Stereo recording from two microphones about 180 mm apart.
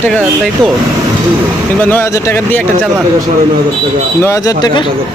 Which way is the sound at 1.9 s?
15° left (ahead or behind).